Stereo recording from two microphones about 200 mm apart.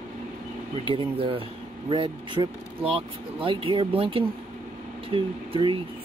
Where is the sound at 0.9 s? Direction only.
25° right (ahead or behind).